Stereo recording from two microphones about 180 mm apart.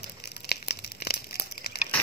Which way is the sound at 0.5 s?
65° left (ahead or behind).